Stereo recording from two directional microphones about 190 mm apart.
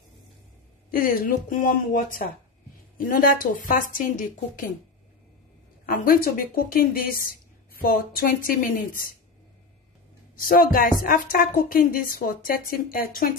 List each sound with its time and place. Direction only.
0.9 s a woman's voice: 45° left (ahead or behind)
5.9 s a woman's voice: 45° left (ahead or behind)
10.5 s a woman's voice: 45° left (ahead or behind)